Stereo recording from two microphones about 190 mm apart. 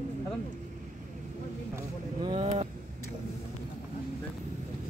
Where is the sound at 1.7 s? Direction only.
25° right (ahead or behind).